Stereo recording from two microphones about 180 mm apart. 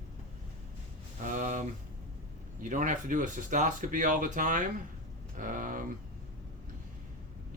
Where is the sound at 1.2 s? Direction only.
45° right (ahead or behind).